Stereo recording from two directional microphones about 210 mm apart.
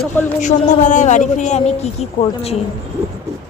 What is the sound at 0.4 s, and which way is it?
A man's voice, 35° left (ahead or behind).